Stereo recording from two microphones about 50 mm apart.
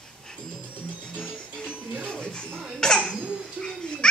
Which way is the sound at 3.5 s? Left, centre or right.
Centre.